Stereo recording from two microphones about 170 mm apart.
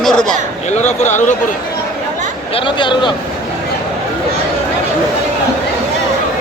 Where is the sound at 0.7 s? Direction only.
45° left (ahead or behind).